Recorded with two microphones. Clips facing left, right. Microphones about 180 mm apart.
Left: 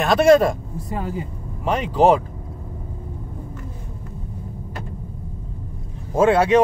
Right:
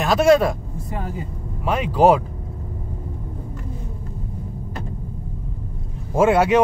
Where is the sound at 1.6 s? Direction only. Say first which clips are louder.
Right 1 dB; 5° right (ahead or behind).